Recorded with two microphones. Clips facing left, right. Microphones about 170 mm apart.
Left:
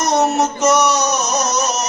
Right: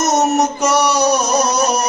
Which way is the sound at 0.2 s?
20° right (ahead or behind).